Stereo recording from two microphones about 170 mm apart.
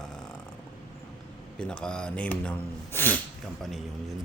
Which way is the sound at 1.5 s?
5° left (ahead or behind).